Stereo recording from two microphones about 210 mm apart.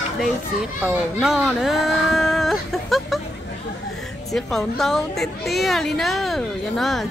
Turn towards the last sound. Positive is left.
turn(degrees=0)  # may be behind; listen again after turning